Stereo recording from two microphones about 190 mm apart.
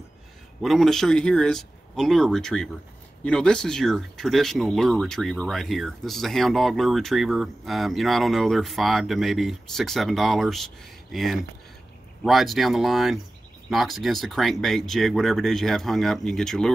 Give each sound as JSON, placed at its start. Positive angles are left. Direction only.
{"t": 0.6, "sound": "speech", "side_deg": 0}